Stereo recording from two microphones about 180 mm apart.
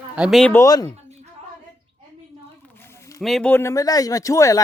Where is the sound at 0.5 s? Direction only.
20° left (ahead or behind).